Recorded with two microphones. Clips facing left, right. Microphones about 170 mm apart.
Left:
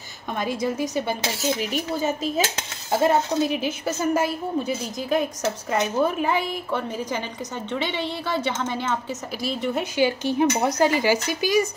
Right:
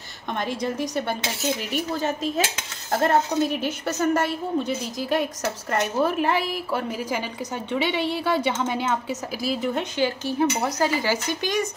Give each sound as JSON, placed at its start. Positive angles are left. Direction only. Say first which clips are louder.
{"t": 0.3, "sound": "a woman's voice", "louder": "left 1 dB", "side_deg": 5}
{"t": 9.9, "sound": "speech", "louder": "left 5 dB", "side_deg": 15}